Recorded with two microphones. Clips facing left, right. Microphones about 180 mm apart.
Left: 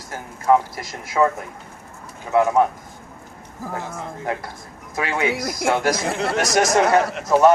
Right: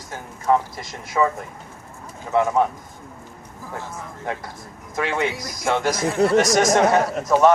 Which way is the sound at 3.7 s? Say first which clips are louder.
Left 2 dB; 55° left (ahead or behind).